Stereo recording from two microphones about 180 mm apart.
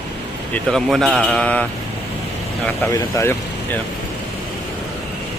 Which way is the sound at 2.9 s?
15° left (ahead or behind).